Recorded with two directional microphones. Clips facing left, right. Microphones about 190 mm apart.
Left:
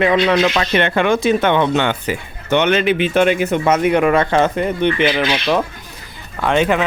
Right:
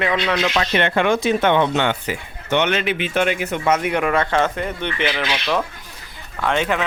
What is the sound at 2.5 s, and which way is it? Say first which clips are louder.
A man's voice: left 5 dB; 40° left (ahead or behind).